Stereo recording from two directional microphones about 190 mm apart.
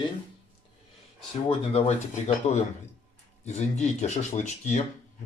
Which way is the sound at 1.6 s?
30° left (ahead or behind).